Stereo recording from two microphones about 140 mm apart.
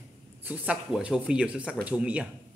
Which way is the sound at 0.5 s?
10° right (ahead or behind).